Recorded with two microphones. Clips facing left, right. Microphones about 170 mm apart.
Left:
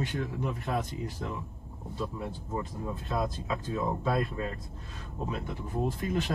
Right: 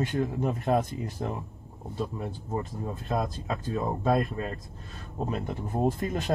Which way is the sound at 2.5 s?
45° right (ahead or behind).